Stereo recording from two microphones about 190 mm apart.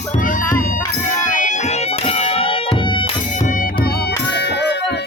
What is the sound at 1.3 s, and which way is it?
Music, 40° left (ahead or behind).